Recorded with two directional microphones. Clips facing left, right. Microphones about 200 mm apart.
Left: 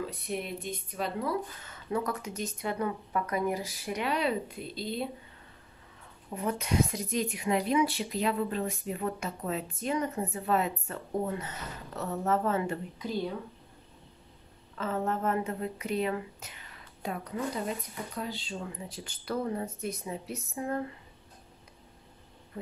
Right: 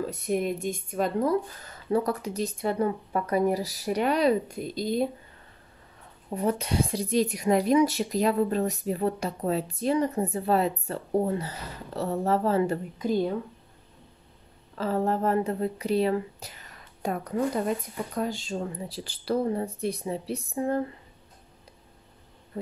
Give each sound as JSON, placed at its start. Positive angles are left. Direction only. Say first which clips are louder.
{"t": 0.0, "sound": "speech", "louder": "right 8 dB", "side_deg": -45}
{"t": 6.3, "sound": "speech", "louder": "right 3 dB", "side_deg": -30}
{"t": 13.0, "sound": "speech", "louder": "right 8 dB", "side_deg": -50}
{"t": 14.8, "sound": "speech", "louder": "right 5 dB", "side_deg": -35}